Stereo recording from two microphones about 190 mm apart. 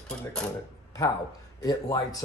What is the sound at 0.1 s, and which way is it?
Speech, 5° left (ahead or behind).